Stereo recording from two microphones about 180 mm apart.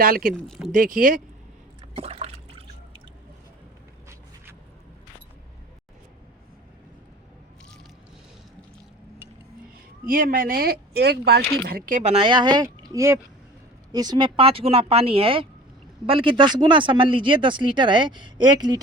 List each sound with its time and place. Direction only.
0.0 s speech: 55° right (ahead or behind)
0.3 s speech: centre (ahead or behind)
0.7 s speech: 50° right (ahead or behind)
1.9 s liquid: 35° right (ahead or behind)
10.1 s speech: 50° right (ahead or behind)
12.0 s speech: 30° right (ahead or behind)